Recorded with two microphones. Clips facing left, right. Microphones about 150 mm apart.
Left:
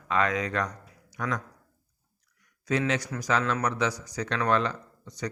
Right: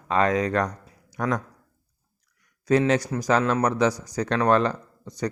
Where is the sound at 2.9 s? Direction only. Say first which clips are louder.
Right 6 dB; 35° right (ahead or behind).